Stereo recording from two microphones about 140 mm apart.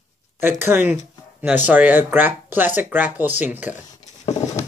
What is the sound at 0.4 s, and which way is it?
Speech, 15° right (ahead or behind).